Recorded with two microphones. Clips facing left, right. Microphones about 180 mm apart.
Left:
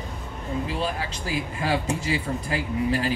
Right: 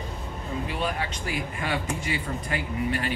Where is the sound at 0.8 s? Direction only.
30° left (ahead or behind).